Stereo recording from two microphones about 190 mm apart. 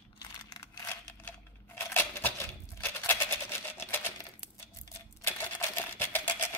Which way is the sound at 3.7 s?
10° left (ahead or behind).